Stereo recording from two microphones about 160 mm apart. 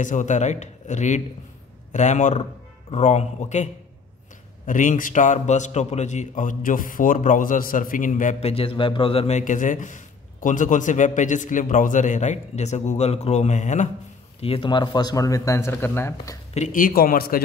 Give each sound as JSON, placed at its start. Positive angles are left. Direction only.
{"t": 0.0, "sound": "a man's voice", "side_deg": 50}
{"t": 4.6, "sound": "a man's voice", "side_deg": 55}
{"t": 9.4, "sound": "a man's voice", "side_deg": 50}
{"t": 14.4, "sound": "speech", "side_deg": 35}
{"t": 16.5, "sound": "speech", "side_deg": 55}